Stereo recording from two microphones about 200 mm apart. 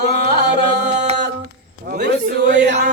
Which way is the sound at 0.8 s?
35° right (ahead or behind).